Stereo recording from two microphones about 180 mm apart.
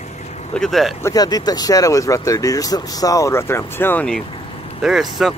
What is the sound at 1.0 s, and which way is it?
Speech, 20° left (ahead or behind).